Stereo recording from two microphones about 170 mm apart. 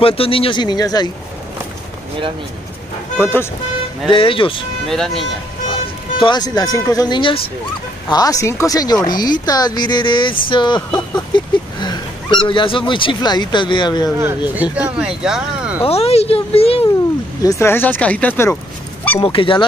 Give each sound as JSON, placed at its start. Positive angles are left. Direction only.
{"t": 0.0, "sound": "speech", "side_deg": 35}
{"t": 3.2, "sound": "speech", "side_deg": 15}
{"t": 4.1, "sound": "speech", "side_deg": 30}
{"t": 4.8, "sound": "speech", "side_deg": 0}
{"t": 5.7, "sound": "speech", "side_deg": 30}
{"t": 14.5, "sound": "speech", "side_deg": -10}
{"t": 15.8, "sound": "speech", "side_deg": 35}
{"t": 17.4, "sound": "speech", "side_deg": 20}
{"t": 19.2, "sound": "speech", "side_deg": 30}